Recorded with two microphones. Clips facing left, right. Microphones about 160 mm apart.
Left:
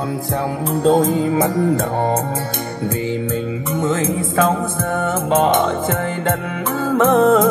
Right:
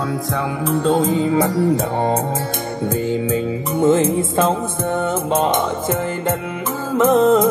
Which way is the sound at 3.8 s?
30° right (ahead or behind).